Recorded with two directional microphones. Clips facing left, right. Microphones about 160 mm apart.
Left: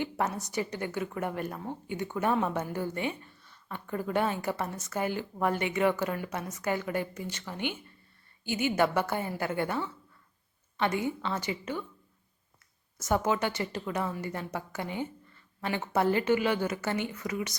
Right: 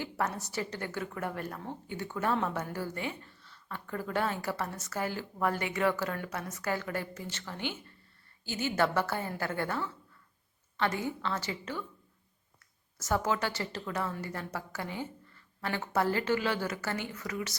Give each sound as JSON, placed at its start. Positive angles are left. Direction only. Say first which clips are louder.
{"t": 0.0, "sound": "a woman's voice", "louder": "left 3 dB", "side_deg": 20}
{"t": 13.0, "sound": "a woman's voice", "louder": "left 3 dB", "side_deg": 20}